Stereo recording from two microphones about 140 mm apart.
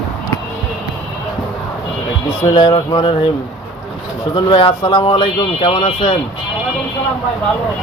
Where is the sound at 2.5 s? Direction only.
40° left (ahead or behind).